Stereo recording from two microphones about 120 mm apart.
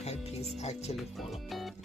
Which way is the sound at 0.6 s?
65° left (ahead or behind).